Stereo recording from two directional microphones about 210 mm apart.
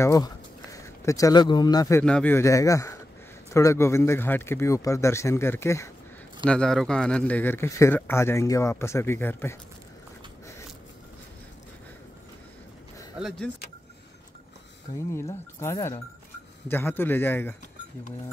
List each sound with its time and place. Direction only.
0.0 s speech: 15° left (ahead or behind)
15.1 s speech: 15° left (ahead or behind)